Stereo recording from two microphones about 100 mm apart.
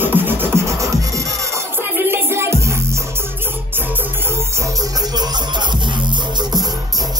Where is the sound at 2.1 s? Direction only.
25° right (ahead or behind).